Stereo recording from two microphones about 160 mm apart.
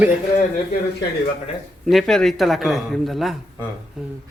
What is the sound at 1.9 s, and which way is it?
A man's voice, centre (ahead or behind).